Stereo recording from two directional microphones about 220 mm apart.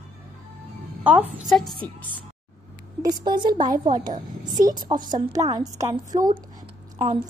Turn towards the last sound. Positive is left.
turn(degrees=-25)  # may be behind; listen again after turning